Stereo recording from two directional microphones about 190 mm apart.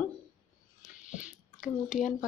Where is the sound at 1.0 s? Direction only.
40° left (ahead or behind).